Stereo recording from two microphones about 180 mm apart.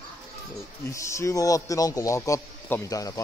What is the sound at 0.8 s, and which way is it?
A man's voice, 15° left (ahead or behind).